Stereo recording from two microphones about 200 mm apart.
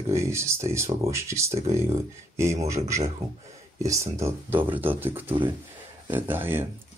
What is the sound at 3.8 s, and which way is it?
Speech, 15° right (ahead or behind).